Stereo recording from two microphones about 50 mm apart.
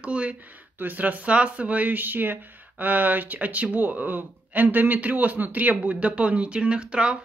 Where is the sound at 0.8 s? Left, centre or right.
Right.